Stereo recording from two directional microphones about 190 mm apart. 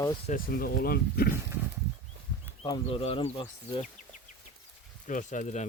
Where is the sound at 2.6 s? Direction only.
25° left (ahead or behind).